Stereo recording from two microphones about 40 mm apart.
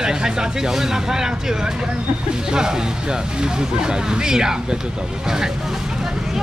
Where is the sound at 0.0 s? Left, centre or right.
Centre.